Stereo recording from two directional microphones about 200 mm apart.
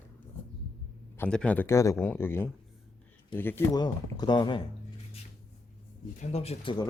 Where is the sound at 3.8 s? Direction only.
20° left (ahead or behind).